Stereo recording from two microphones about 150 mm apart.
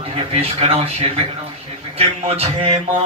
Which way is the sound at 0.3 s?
40° right (ahead or behind).